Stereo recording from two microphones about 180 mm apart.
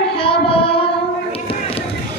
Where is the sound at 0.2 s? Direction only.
30° left (ahead or behind).